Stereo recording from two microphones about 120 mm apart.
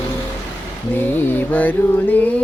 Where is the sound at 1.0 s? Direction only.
15° left (ahead or behind).